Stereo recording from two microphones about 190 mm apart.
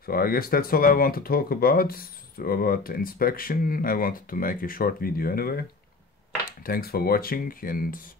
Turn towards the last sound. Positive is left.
turn(degrees=45)  # may be behind; listen again after turning